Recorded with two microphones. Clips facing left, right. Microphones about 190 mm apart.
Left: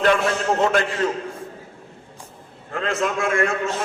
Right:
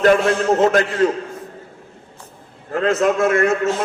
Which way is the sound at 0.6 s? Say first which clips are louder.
Right 4 dB; 40° right (ahead or behind).